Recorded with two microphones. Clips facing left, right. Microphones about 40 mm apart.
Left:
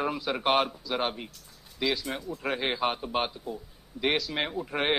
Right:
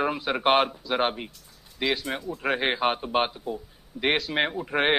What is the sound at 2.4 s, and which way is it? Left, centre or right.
A man's voice, right.